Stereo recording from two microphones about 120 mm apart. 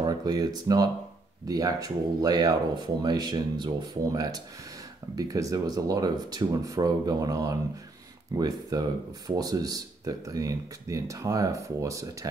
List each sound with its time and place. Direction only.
0.0 s speech: 35° right (ahead or behind)